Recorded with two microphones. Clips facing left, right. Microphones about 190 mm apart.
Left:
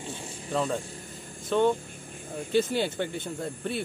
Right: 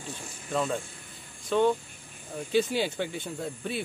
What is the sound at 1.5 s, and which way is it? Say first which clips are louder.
Speech: even; 20° left (ahead or behind).